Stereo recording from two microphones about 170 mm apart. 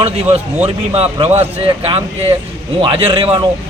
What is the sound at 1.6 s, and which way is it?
A man's voice, 35° right (ahead or behind).